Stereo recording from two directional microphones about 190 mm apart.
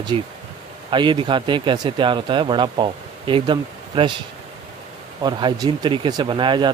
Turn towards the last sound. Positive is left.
turn(degrees=-25)  # may be behind; listen again after turning